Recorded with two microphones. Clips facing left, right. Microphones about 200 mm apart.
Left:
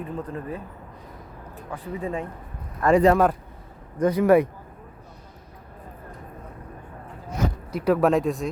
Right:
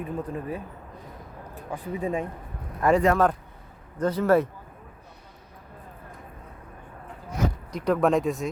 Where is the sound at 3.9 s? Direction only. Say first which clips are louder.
Left 4 dB; 15° left (ahead or behind).